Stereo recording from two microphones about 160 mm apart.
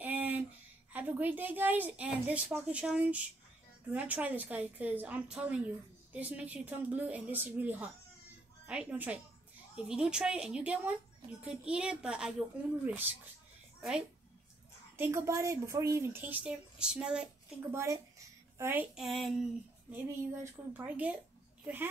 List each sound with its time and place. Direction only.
0.0 s a sound: 10° right (ahead or behind)
0.9 s speech: 10° right (ahead or behind)
15.0 s speech: 15° right (ahead or behind)
17.6 s a child's voice: 20° right (ahead or behind)
19.0 s speech: centre (ahead or behind)
19.9 s speech: 10° right (ahead or behind)